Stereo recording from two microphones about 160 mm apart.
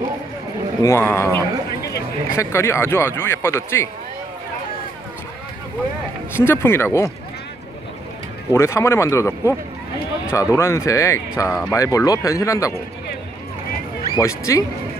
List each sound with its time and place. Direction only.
0.8 s speech: 15° left (ahead or behind)
6.3 s speech: 15° left (ahead or behind)
8.5 s speech: 20° left (ahead or behind)
10.3 s speech: 20° left (ahead or behind)
14.1 s speech: 20° left (ahead or behind)